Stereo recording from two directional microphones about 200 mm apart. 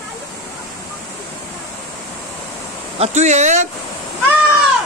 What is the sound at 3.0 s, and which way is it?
Speech, 35° right (ahead or behind).